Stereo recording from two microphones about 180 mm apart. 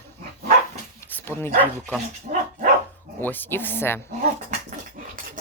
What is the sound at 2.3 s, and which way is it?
Dog, 45° right (ahead or behind).